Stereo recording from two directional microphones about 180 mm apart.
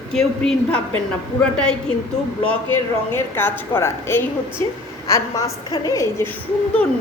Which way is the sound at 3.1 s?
10° left (ahead or behind).